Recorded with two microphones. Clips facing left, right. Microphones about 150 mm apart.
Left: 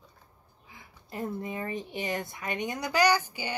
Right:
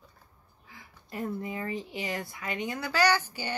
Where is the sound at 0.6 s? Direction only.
20° left (ahead or behind).